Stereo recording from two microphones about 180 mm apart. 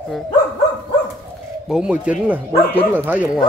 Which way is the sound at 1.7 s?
5° right (ahead or behind).